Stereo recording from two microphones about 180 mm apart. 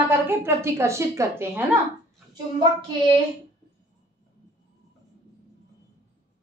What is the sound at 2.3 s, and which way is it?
Speech, 25° right (ahead or behind).